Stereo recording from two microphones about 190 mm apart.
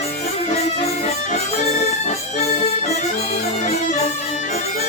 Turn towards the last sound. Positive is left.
turn(degrees=35)  # may be behind; listen again after turning